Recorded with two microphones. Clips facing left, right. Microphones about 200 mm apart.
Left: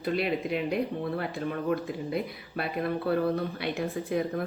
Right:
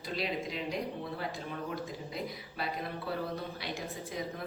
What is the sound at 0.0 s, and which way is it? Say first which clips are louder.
Speech: left 7 dB; 60° left (ahead or behind).